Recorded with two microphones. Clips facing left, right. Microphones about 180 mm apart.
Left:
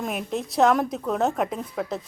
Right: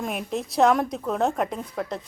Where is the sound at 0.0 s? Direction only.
Centre (ahead or behind).